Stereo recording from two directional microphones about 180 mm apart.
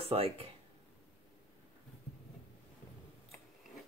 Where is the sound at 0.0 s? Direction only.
30° right (ahead or behind).